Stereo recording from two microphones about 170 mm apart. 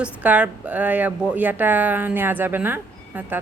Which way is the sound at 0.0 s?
10° right (ahead or behind).